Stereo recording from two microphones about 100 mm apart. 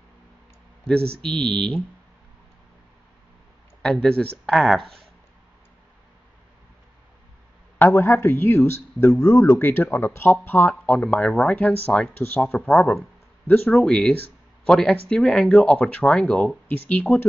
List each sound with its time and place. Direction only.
0.8 s speech: 5° left (ahead or behind)
3.8 s speech: 5° left (ahead or behind)
7.8 s a man's voice: 25° left (ahead or behind)
9.6 s a man's voice: 20° left (ahead or behind)
16.6 s a man's voice: 20° left (ahead or behind)